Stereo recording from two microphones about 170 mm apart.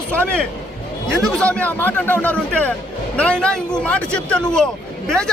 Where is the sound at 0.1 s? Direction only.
10° left (ahead or behind).